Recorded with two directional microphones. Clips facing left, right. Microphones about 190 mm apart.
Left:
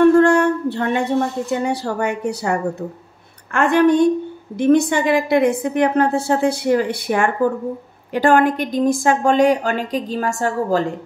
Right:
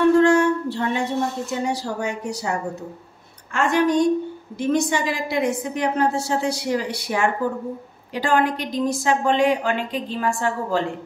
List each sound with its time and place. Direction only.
0.2 s female singing: 55° left (ahead or behind)
1.5 s a woman's voice: 60° left (ahead or behind); by 10.8 s 40° left (ahead or behind)